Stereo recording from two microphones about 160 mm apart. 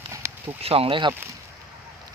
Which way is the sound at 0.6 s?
35° right (ahead or behind).